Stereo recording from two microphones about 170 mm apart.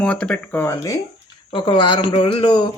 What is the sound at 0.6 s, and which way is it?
Speech, 20° left (ahead or behind).